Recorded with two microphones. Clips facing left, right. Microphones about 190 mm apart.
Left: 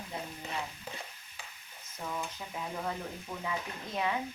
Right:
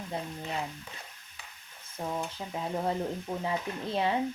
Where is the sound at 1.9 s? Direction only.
30° right (ahead or behind).